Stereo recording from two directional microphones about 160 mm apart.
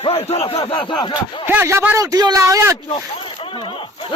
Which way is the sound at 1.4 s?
15° right (ahead or behind).